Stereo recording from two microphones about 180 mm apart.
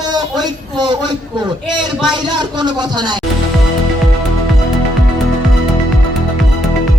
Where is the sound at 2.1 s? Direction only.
25° right (ahead or behind).